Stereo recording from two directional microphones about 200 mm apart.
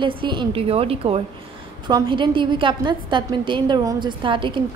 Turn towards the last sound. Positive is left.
turn(degrees=-25)  # may be behind; listen again after turning